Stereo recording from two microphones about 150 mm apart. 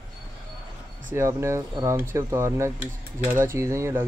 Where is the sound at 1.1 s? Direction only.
20° right (ahead or behind).